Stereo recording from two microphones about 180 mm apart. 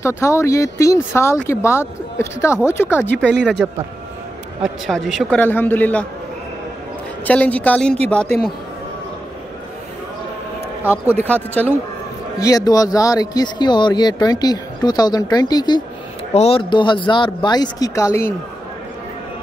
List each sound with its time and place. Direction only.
0.0 s speech: 15° left (ahead or behind)
3.1 s a man's voice: centre (ahead or behind)
7.2 s speech: 10° left (ahead or behind)
11.2 s speech: 10° left (ahead or behind)
12.4 s speech: 20° left (ahead or behind)